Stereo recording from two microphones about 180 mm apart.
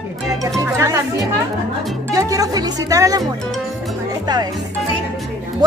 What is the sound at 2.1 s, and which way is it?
Music, 20° right (ahead or behind).